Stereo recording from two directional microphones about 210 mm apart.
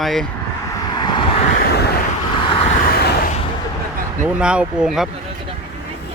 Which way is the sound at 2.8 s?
45° left (ahead or behind).